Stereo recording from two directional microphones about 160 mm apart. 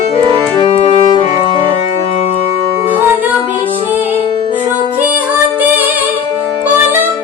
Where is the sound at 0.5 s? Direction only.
35° left (ahead or behind).